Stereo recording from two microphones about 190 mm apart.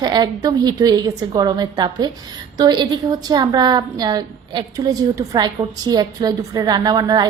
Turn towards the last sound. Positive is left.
turn(degrees=-20)  # may be behind; listen again after turning